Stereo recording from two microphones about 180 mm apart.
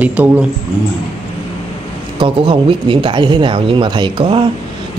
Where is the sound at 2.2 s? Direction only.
30° right (ahead or behind).